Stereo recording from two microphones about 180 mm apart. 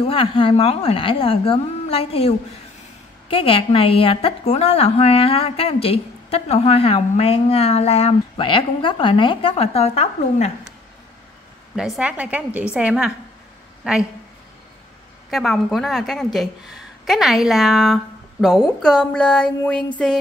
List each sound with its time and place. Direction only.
0.0 s a woman's voice: 30° left (ahead or behind)
11.7 s a woman's voice: 5° right (ahead or behind)
15.3 s a woman's voice: centre (ahead or behind)